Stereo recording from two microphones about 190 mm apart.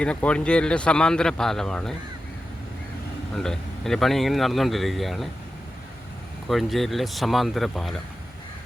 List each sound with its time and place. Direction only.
0.0 s speech: 5° left (ahead or behind)
3.3 s speech: centre (ahead or behind)
6.5 s speech: centre (ahead or behind)